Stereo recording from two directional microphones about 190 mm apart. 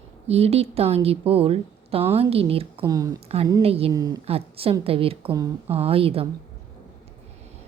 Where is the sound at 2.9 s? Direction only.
20° right (ahead or behind).